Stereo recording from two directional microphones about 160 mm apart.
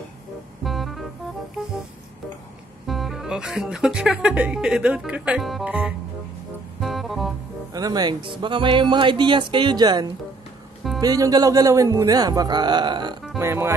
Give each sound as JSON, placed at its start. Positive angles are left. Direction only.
{"t": 0.7, "sound": "music", "side_deg": 0}
{"t": 2.9, "sound": "speech", "side_deg": 0}
{"t": 6.8, "sound": "music", "side_deg": 0}
{"t": 7.7, "sound": "speech", "side_deg": -25}
{"t": 13.4, "sound": "speech", "side_deg": -15}